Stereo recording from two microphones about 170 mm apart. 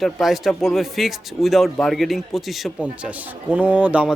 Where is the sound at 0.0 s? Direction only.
Centre (ahead or behind).